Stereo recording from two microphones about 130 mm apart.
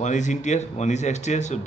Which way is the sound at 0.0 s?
70° left (ahead or behind).